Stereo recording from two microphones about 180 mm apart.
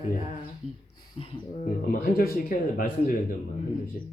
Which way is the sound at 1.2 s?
35° left (ahead or behind).